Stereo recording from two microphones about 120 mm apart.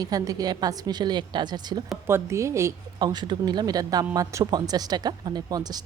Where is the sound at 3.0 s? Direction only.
35° right (ahead or behind).